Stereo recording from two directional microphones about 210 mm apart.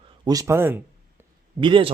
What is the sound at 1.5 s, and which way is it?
Speech, 25° right (ahead or behind).